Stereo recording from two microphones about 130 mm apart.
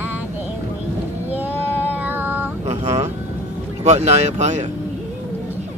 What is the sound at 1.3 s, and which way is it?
Child singing, 15° right (ahead or behind).